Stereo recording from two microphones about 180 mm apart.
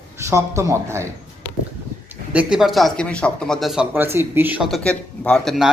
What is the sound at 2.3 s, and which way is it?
Speech, 5° right (ahead or behind).